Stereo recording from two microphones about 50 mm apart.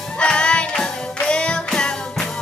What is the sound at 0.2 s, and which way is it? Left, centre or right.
Music, left.